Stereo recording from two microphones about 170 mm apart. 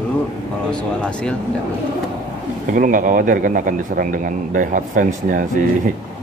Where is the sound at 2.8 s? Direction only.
50° right (ahead or behind).